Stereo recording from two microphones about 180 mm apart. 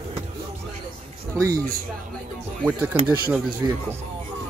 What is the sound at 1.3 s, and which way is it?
Speech, 20° right (ahead or behind).